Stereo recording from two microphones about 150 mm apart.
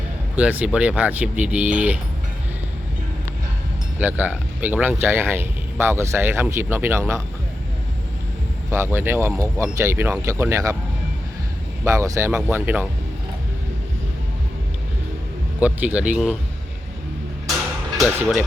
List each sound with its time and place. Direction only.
0.3 s speech: 10° right (ahead or behind)
3.9 s speech: 10° right (ahead or behind)
8.7 s speech: 15° right (ahead or behind)
11.9 s speech: 20° right (ahead or behind)
15.6 s speech: 10° right (ahead or behind)
17.5 s music: centre (ahead or behind)